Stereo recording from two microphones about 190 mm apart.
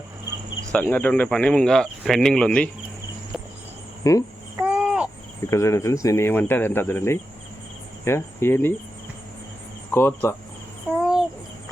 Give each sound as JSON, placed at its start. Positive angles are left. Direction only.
{"t": 0.7, "sound": "speech", "side_deg": 10}
{"t": 4.0, "sound": "speech", "side_deg": 15}
{"t": 4.5, "sound": "a sound", "side_deg": -5}
{"t": 5.5, "sound": "speech", "side_deg": 15}
{"t": 8.0, "sound": "cricket", "side_deg": 15}
{"t": 9.9, "sound": "speech", "side_deg": 10}
{"t": 11.0, "sound": "a sound", "side_deg": 0}